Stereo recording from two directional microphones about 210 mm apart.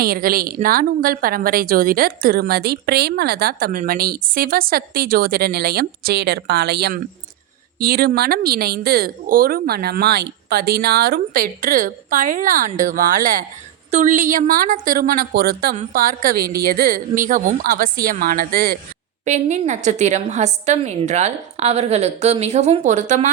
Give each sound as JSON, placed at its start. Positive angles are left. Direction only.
{"t": 0.0, "sound": "a woman's voice", "side_deg": -45}
{"t": 15.7, "sound": "a woman's voice", "side_deg": -35}